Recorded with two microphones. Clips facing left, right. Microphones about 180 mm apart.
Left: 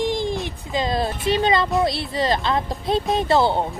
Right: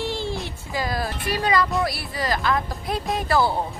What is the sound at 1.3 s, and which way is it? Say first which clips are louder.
Speech: left 3 dB; 25° left (ahead or behind).